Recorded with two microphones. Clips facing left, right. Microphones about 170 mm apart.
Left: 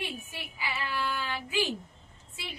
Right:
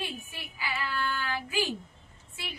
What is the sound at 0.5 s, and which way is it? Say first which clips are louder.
Child singing: right 1 dB; 20° left (ahead or behind).